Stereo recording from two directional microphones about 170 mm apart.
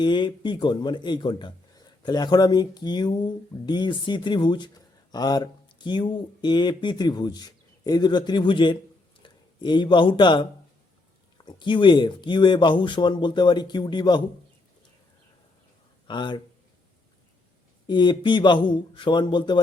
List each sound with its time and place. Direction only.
0.0 s speech: 25° left (ahead or behind)
11.4 s speech: 30° left (ahead or behind)
16.0 s speech: 25° left (ahead or behind)
17.8 s speech: 25° left (ahead or behind)